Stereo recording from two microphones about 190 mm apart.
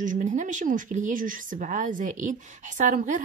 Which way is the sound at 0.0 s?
40° right (ahead or behind).